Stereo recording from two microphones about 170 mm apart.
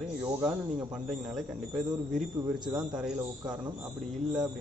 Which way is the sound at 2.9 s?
5° right (ahead or behind).